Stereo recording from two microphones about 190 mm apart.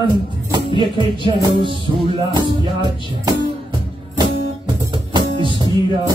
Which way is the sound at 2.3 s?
20° right (ahead or behind).